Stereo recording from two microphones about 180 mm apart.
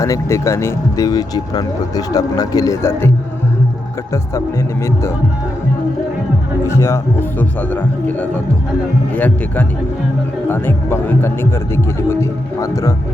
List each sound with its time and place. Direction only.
0.0 s speech: 15° left (ahead or behind)
6.7 s speech: 15° left (ahead or behind)